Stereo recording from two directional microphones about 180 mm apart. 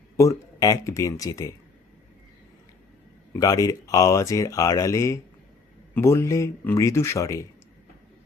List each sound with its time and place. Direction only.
0.2 s speech: 20° left (ahead or behind)
3.3 s speech: 20° left (ahead or behind)